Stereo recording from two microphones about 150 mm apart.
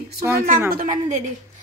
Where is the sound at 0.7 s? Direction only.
60° right (ahead or behind).